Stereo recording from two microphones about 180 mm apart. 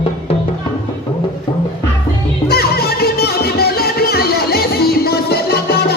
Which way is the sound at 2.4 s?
60° left (ahead or behind).